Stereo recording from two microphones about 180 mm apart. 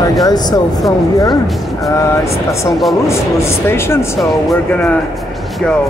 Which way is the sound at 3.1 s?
15° left (ahead or behind).